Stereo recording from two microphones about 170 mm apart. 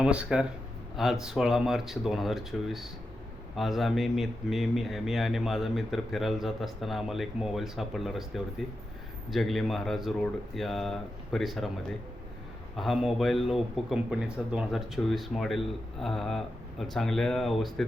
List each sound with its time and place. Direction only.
0.0 s a man's voice: 5° right (ahead or behind)